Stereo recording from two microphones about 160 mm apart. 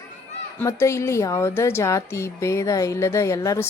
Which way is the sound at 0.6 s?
15° left (ahead or behind).